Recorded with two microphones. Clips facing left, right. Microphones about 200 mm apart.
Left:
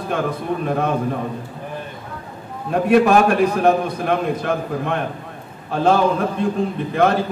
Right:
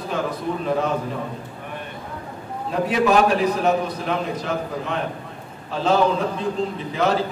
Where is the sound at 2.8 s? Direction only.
55° left (ahead or behind).